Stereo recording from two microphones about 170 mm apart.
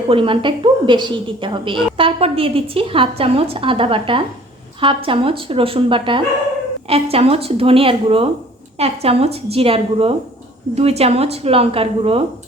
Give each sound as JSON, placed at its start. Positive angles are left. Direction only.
{"t": 0.1, "sound": "a woman's voice", "side_deg": -30}